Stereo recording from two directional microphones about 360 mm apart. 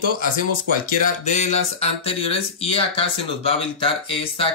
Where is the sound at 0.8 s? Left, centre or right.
Centre.